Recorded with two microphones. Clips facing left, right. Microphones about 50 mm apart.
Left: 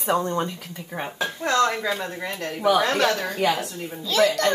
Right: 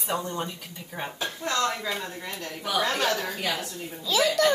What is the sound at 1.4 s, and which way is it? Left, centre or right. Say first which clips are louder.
Speech: left 6 dB; left.